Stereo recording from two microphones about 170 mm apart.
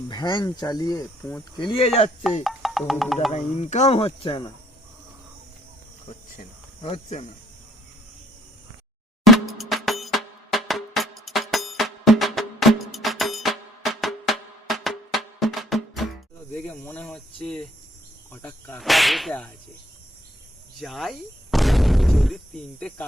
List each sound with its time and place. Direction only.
0.1 s speech: 25° left (ahead or behind)
2.4 s speech: centre (ahead or behind)
3.3 s speech: 45° left (ahead or behind)
6.8 s speech: 35° left (ahead or behind)
9.2 s music: centre (ahead or behind)
16.5 s snake: 10° left (ahead or behind)
18.3 s speech: 15° left (ahead or behind)
18.8 s whip: centre (ahead or behind)
20.7 s speech: centre (ahead or behind)